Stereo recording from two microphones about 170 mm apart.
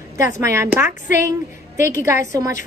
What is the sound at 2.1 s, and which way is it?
Speech, 15° right (ahead or behind).